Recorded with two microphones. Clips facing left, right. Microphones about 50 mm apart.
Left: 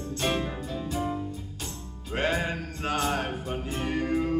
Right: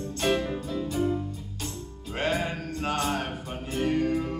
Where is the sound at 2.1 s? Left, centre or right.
Left.